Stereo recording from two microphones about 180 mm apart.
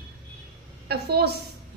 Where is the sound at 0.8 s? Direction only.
65° right (ahead or behind).